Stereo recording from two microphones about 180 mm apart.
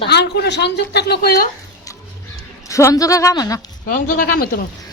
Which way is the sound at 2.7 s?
20° left (ahead or behind).